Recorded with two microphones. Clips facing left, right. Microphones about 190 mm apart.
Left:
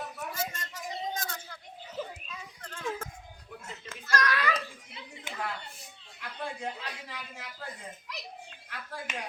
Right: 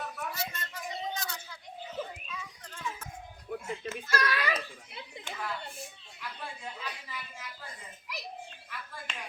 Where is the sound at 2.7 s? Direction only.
55° left (ahead or behind).